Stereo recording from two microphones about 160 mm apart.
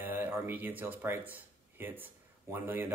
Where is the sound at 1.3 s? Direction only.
10° right (ahead or behind).